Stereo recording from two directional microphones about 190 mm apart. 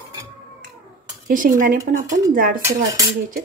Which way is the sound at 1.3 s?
45° right (ahead or behind).